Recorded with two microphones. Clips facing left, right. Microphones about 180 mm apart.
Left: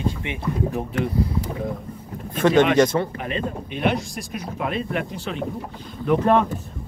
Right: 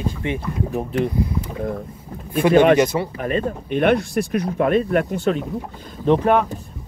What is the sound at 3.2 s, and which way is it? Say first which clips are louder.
Speech: right 5 dB; 45° right (ahead or behind).